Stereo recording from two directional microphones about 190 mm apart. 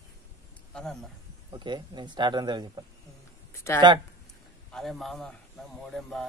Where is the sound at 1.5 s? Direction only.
25° right (ahead or behind).